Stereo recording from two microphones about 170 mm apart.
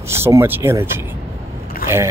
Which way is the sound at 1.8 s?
60° left (ahead or behind).